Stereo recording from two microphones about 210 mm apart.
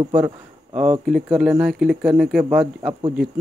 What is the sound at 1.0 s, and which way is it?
A man's voice, centre (ahead or behind).